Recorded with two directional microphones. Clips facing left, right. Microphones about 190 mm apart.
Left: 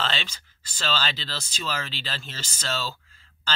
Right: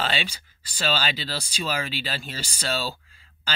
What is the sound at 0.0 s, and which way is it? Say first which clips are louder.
Speech: right 3 dB; 10° right (ahead or behind).